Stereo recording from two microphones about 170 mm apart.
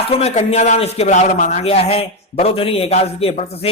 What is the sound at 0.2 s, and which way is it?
A man's voice, 40° left (ahead or behind).